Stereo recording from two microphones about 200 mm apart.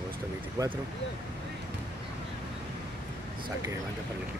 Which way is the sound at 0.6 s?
15° right (ahead or behind).